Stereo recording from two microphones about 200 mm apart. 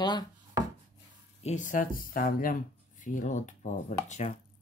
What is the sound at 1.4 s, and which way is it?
Speech, 35° left (ahead or behind).